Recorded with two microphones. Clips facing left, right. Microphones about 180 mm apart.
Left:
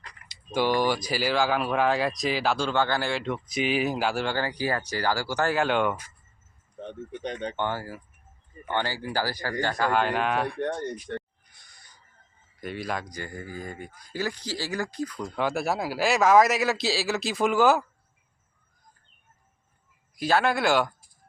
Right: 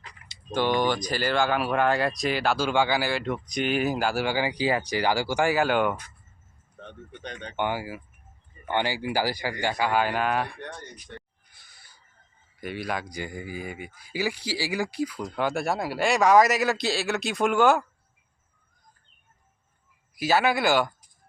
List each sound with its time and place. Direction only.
0.5 s speech: 5° left (ahead or behind)
7.3 s speech: 30° left (ahead or behind)
7.5 s speech: 10° right (ahead or behind)
10.6 s speech: 50° left (ahead or behind)
11.5 s crow: 5° right (ahead or behind)
12.5 s speech: centre (ahead or behind)
13.1 s speech: 15° right (ahead or behind)
20.1 s speech: 5° right (ahead or behind)